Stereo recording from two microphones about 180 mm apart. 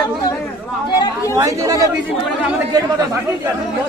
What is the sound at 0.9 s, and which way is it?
Speech, 25° left (ahead or behind).